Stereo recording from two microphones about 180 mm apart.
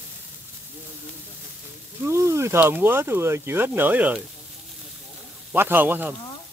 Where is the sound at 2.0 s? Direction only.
15° right (ahead or behind).